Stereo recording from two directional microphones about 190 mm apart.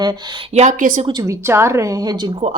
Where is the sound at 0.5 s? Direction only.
40° right (ahead or behind).